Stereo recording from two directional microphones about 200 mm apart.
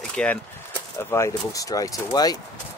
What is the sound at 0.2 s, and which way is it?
Speech, 5° left (ahead or behind).